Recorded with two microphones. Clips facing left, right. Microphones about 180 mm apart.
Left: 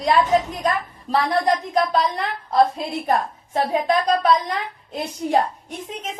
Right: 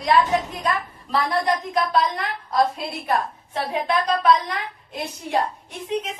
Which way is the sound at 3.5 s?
40° left (ahead or behind).